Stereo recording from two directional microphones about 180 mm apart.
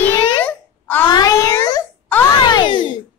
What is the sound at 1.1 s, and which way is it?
Speech, 20° left (ahead or behind).